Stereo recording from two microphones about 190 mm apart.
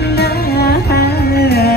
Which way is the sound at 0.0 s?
55° left (ahead or behind).